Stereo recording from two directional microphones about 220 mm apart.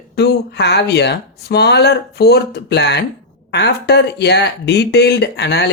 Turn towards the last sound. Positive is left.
turn(degrees=50)  # may be behind; listen again after turning